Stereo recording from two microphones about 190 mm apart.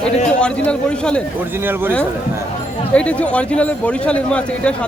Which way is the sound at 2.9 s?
5° left (ahead or behind).